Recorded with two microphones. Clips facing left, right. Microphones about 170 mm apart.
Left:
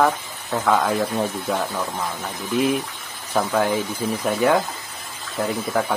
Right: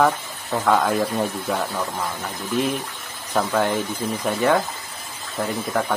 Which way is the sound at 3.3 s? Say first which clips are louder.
Left 1 dB; 10° left (ahead or behind).